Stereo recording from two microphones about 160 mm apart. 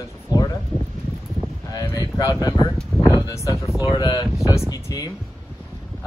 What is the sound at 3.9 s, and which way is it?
Speech, 25° left (ahead or behind).